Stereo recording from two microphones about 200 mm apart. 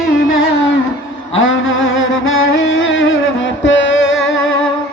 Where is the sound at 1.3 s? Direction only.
75° left (ahead or behind).